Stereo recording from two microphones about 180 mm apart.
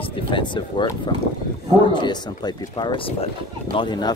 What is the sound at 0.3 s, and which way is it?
Speech, 25° left (ahead or behind).